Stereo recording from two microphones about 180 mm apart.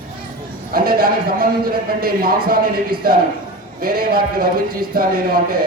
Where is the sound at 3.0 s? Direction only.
55° right (ahead or behind).